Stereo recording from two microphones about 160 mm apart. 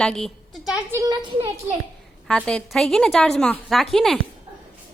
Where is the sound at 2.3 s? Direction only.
5° left (ahead or behind).